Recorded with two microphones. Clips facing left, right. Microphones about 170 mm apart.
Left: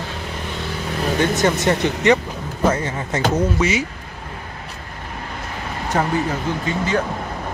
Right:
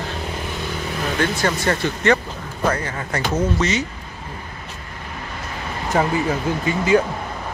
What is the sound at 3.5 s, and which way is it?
Speech, 10° left (ahead or behind).